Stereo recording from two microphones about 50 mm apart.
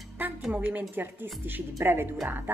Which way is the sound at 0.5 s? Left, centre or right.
Right.